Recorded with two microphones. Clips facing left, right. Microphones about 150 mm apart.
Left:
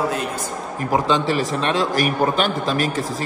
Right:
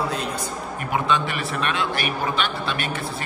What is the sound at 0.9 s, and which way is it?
A man's voice, 35° left (ahead or behind).